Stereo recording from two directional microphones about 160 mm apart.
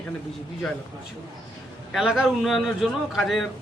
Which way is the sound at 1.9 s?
5° right (ahead or behind).